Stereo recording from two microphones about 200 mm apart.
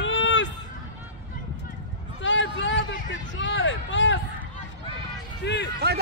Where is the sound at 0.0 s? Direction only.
65° left (ahead or behind).